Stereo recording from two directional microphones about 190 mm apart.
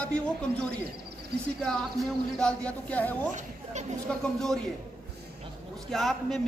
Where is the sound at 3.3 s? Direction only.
40° right (ahead or behind).